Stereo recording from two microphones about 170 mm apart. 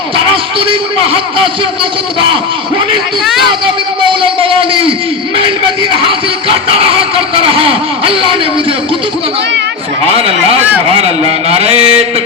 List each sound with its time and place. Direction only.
0.6 s a man's voice: 35° right (ahead or behind)
4.0 s a sound: 30° right (ahead or behind)
6.0 s a man's voice: 30° right (ahead or behind)
10.2 s a man's voice: 35° right (ahead or behind)